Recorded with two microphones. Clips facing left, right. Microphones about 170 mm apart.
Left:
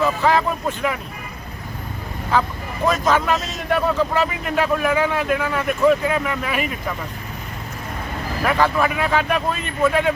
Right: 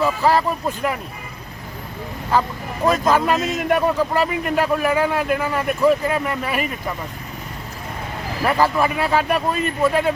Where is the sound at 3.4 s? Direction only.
55° right (ahead or behind).